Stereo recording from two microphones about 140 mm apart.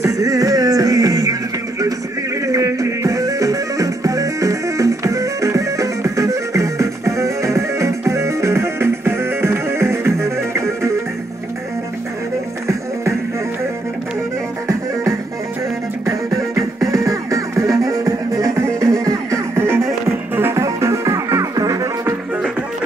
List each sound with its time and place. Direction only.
0.0 s music: 25° right (ahead or behind)
2.4 s music: 25° right (ahead or behind)
16.1 s music: 25° right (ahead or behind)